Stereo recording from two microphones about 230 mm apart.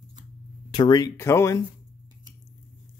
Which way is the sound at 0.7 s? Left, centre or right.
Centre.